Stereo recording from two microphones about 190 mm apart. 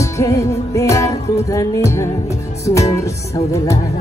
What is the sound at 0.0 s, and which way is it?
Music, 15° left (ahead or behind).